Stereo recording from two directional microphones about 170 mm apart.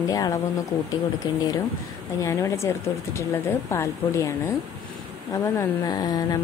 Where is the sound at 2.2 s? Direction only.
20° left (ahead or behind).